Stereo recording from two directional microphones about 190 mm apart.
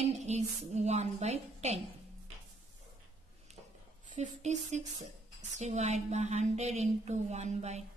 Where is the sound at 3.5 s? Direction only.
35° right (ahead or behind).